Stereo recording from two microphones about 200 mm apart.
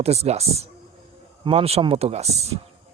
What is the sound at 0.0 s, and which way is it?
Speech, 30° right (ahead or behind).